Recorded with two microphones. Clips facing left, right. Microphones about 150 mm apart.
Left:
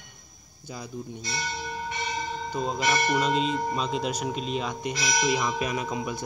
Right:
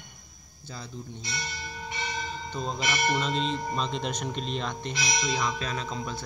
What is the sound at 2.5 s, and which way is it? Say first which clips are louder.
Speech: left 5 dB; 5° left (ahead or behind).